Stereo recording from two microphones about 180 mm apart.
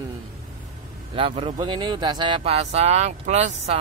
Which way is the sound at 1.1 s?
30° right (ahead or behind).